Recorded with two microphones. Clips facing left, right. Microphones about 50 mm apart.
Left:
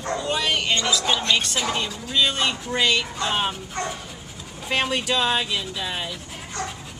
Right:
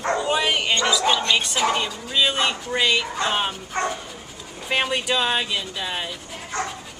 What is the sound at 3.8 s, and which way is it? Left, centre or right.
Dog, right.